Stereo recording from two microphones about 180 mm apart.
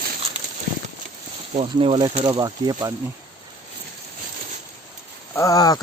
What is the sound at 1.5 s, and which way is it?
Speech, 35° right (ahead or behind).